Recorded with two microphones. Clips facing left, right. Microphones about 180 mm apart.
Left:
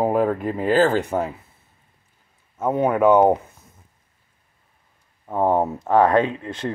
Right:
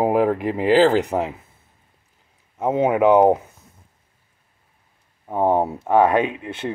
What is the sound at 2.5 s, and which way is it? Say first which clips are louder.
Speech: right 1 dB; 20° right (ahead or behind).